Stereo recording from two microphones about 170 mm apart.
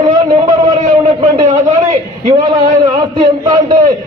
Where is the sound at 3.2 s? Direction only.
25° right (ahead or behind).